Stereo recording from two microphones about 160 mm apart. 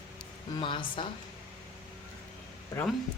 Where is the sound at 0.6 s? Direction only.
30° left (ahead or behind).